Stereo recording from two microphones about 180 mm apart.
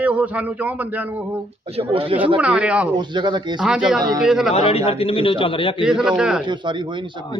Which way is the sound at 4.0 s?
20° right (ahead or behind).